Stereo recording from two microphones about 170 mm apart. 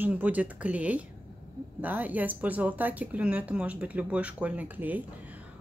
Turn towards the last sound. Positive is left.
turn(degrees=-10)  # may be behind; listen again after turning